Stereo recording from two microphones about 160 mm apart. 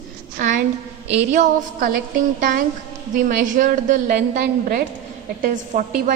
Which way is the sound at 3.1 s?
55° right (ahead or behind).